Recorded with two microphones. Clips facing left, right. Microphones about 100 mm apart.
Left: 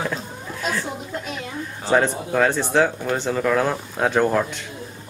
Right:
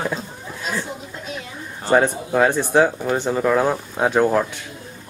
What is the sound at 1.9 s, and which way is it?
Speech, 10° right (ahead or behind).